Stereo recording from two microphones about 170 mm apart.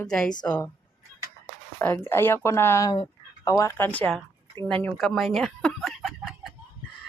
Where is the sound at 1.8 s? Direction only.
10° left (ahead or behind).